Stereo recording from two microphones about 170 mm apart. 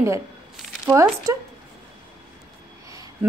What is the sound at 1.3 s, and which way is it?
Speech, 20° right (ahead or behind).